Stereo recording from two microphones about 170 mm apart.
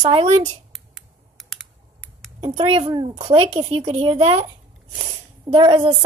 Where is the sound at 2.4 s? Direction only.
35° right (ahead or behind).